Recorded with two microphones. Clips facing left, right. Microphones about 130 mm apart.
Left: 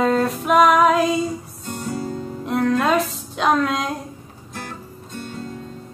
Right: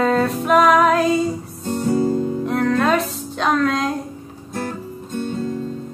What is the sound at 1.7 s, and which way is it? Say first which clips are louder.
Guitar: right 9 dB; 35° right (ahead or behind).